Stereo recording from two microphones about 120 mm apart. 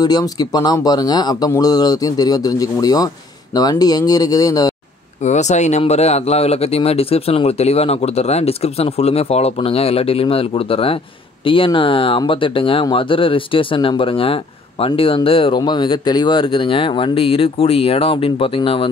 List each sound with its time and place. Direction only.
0.0 s speech: 35° left (ahead or behind)
5.2 s speech: 75° left (ahead or behind); by 18.9 s 50° left (ahead or behind)